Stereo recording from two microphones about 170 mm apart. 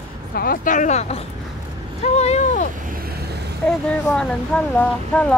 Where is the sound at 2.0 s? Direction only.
40° left (ahead or behind).